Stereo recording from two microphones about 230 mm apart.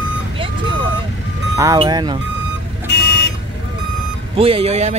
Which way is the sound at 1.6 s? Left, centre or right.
Centre.